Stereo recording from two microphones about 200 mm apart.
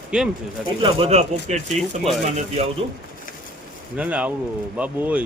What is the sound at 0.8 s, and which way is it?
Speech, 25° right (ahead or behind).